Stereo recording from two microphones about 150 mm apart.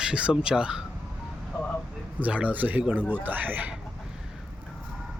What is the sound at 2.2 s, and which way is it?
Speech, 10° right (ahead or behind).